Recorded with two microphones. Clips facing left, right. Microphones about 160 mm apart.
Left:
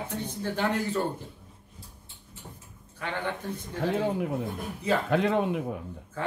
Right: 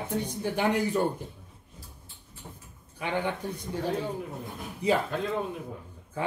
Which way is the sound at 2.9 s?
15° right (ahead or behind).